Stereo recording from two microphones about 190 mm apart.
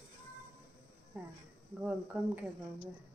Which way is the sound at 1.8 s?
10° right (ahead or behind).